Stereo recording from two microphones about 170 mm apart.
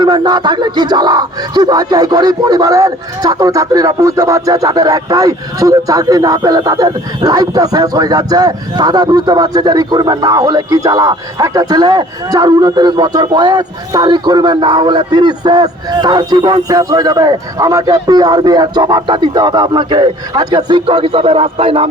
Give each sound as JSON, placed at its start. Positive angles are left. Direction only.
{"t": 0.0, "sound": "speech", "side_deg": -25}